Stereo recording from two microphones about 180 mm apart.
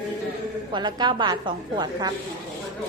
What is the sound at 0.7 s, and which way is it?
A woman's voice, 25° right (ahead or behind).